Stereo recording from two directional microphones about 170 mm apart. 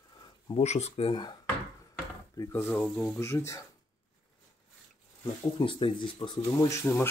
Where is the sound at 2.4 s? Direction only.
20° left (ahead or behind).